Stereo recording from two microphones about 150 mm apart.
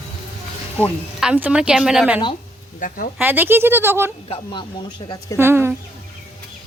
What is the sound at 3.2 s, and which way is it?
Speech, 15° right (ahead or behind).